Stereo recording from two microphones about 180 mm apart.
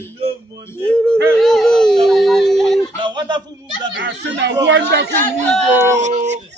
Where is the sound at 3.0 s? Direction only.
25° right (ahead or behind).